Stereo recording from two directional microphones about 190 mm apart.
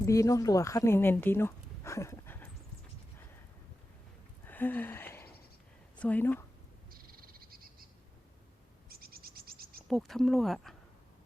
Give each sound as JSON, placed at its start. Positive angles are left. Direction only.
{"t": 0.0, "sound": "speech", "side_deg": 15}
{"t": 4.4, "sound": "a sound", "side_deg": 10}
{"t": 6.0, "sound": "speech", "side_deg": 10}
{"t": 6.9, "sound": "frog", "side_deg": -50}
{"t": 8.9, "sound": "a sound", "side_deg": -50}
{"t": 9.9, "sound": "speech", "side_deg": 0}